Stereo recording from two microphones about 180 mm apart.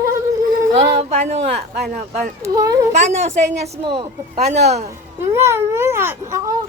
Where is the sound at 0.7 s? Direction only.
40° right (ahead or behind).